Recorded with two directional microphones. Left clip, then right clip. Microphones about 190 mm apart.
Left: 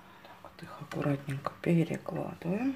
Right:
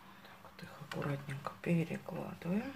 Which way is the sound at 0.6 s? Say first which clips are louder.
Left 5 dB; 30° left (ahead or behind).